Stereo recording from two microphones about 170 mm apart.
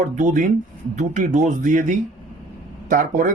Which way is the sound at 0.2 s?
45° right (ahead or behind).